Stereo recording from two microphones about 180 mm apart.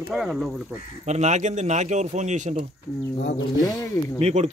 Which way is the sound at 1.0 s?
40° right (ahead or behind).